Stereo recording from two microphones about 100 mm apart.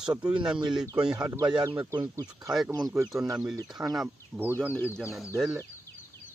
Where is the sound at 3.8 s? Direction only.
10° right (ahead or behind).